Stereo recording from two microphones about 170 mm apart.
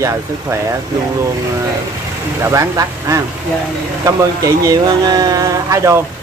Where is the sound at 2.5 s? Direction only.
20° right (ahead or behind).